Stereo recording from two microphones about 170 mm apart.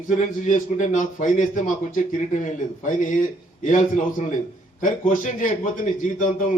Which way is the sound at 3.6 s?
50° left (ahead or behind).